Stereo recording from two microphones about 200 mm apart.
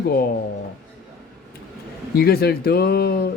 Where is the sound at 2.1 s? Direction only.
50° left (ahead or behind).